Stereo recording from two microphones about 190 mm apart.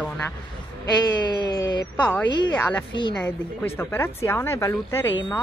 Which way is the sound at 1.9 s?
10° left (ahead or behind).